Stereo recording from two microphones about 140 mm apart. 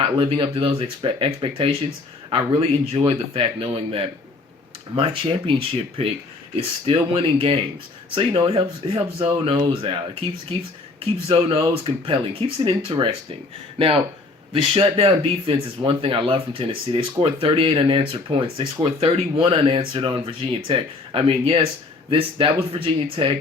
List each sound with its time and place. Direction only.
0.0 s speech: 40° right (ahead or behind)
11.0 s speech: 45° right (ahead or behind)